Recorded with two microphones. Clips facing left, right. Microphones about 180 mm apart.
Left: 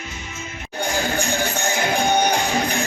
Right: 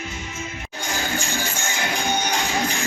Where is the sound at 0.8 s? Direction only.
60° left (ahead or behind).